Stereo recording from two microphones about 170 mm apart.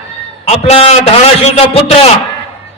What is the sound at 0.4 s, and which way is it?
A man's voice, 35° left (ahead or behind).